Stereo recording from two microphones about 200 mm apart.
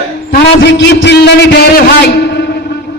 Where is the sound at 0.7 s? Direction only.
60° left (ahead or behind).